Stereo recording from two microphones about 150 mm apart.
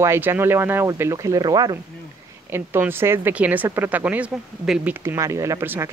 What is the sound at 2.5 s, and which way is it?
Speech, 15° right (ahead or behind).